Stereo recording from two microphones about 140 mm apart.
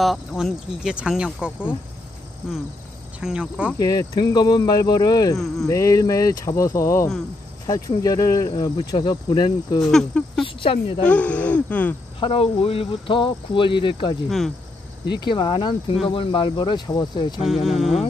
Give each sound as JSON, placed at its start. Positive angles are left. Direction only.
{"t": 0.0, "sound": "speech", "side_deg": 0}
{"t": 3.2, "sound": "speech", "side_deg": -5}
{"t": 3.7, "sound": "speech", "side_deg": 25}
{"t": 9.8, "sound": "speech", "side_deg": 5}
{"t": 10.4, "sound": "speech", "side_deg": 40}
{"t": 11.1, "sound": "speech", "side_deg": 10}
{"t": 12.2, "sound": "speech", "side_deg": 40}
{"t": 17.6, "sound": "speech", "side_deg": 0}